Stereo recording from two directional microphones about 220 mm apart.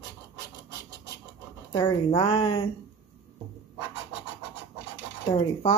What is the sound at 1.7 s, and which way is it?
Speech, 15° left (ahead or behind).